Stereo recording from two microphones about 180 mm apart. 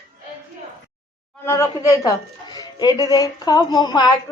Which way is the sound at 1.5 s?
20° left (ahead or behind).